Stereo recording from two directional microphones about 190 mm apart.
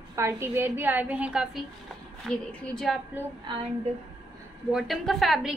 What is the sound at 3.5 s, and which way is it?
Speech, 25° right (ahead or behind).